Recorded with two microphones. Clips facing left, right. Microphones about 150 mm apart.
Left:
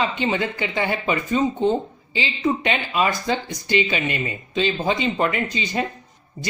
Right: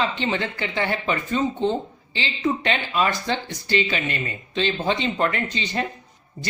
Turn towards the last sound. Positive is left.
turn(degrees=15)  # may be behind; listen again after turning